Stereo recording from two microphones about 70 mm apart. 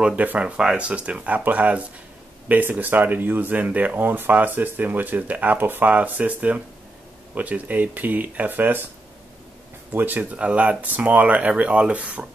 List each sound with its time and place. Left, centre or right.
0.0 s speech: right
9.9 s speech: right